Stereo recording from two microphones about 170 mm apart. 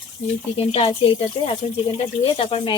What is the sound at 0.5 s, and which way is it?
Speech, 35° left (ahead or behind).